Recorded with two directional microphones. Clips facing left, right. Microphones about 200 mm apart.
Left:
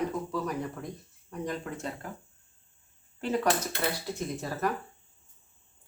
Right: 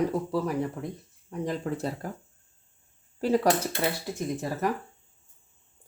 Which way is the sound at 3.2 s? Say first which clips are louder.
Right 5 dB; 35° right (ahead or behind).